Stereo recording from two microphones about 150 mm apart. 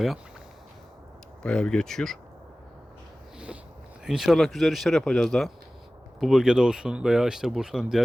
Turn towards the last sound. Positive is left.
turn(degrees=-5)  # may be behind; listen again after turning